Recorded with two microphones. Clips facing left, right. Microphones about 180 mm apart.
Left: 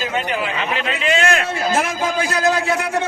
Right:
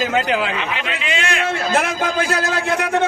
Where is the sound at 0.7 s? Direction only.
40° left (ahead or behind).